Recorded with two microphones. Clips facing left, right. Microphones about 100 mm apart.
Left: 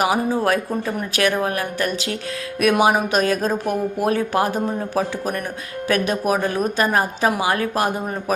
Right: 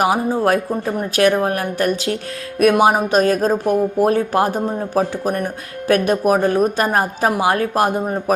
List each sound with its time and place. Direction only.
0.0 s speech: 40° right (ahead or behind)